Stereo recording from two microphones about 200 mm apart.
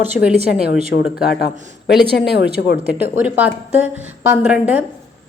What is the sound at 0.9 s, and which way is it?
Speech, 60° left (ahead or behind).